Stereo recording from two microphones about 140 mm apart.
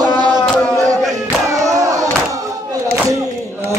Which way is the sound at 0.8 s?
25° right (ahead or behind).